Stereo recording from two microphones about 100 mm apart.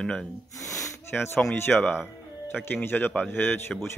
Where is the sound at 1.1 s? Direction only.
25° left (ahead or behind).